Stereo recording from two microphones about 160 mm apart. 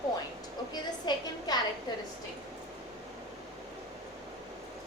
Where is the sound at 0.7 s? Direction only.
25° left (ahead or behind).